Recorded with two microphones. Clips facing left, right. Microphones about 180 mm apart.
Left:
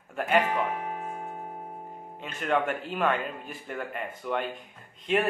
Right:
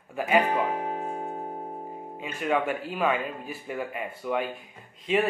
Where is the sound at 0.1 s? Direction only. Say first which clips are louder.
Right 1 dB; 5° right (ahead or behind).